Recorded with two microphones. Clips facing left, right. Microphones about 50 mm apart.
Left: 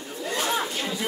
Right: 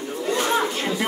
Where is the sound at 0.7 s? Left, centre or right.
Right.